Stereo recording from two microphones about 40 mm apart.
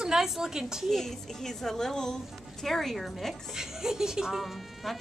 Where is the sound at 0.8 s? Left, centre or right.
Centre.